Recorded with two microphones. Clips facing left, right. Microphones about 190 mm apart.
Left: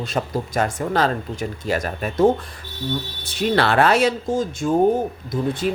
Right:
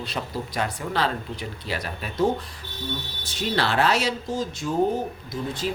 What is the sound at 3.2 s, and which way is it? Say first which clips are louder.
Speech: left 6 dB; 60° left (ahead or behind).